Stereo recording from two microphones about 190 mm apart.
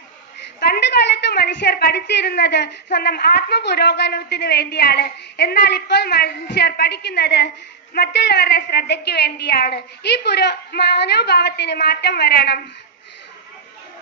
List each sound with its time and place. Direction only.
0.7 s a woman's voice: 65° left (ahead or behind)